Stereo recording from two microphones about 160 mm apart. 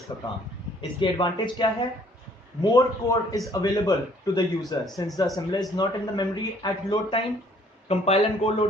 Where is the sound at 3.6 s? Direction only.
25° left (ahead or behind).